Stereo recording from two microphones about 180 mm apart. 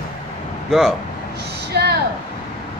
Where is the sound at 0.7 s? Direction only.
Centre (ahead or behind).